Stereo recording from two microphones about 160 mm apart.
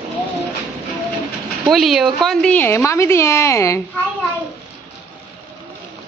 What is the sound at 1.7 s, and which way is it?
A woman's voice, centre (ahead or behind).